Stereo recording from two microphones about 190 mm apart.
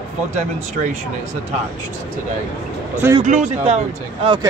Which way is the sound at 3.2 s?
40° right (ahead or behind).